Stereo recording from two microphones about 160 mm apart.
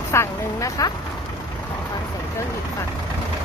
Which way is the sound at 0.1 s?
20° left (ahead or behind).